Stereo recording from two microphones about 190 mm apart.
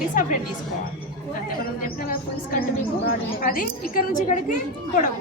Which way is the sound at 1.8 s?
50° left (ahead or behind).